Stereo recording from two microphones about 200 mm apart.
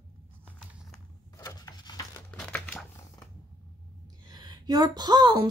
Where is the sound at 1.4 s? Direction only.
20° left (ahead or behind).